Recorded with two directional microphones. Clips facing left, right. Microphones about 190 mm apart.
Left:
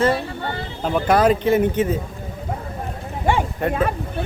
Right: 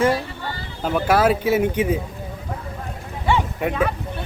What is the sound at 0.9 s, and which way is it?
Speech, 5° right (ahead or behind).